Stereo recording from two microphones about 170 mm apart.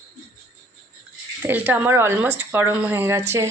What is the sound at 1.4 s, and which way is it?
Speech, 10° right (ahead or behind).